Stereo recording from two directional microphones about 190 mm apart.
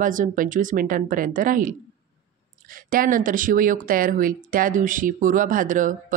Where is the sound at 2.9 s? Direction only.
45° right (ahead or behind).